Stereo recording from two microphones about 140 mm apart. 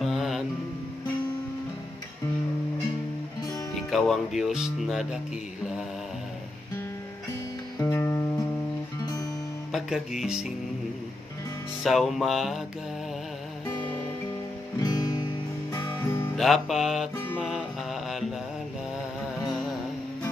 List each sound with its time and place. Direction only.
0.0 s music: centre (ahead or behind)
3.7 s speech: centre (ahead or behind)
7.8 s music: 15° left (ahead or behind)
9.7 s speech: centre (ahead or behind)
11.8 s speech: centre (ahead or behind)
14.8 s music: 30° left (ahead or behind)
16.3 s speech: centre (ahead or behind)
17.5 s mantra: centre (ahead or behind)
19.4 s music: centre (ahead or behind)